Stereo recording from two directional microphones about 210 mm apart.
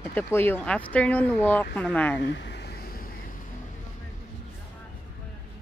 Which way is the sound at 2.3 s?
55° left (ahead or behind).